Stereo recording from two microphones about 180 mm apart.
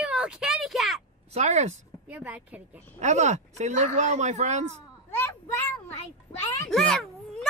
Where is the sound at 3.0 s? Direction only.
40° right (ahead or behind).